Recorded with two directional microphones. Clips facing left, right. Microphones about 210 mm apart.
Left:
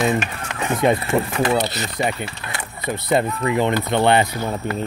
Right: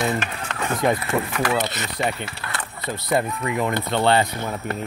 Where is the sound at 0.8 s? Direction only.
30° left (ahead or behind).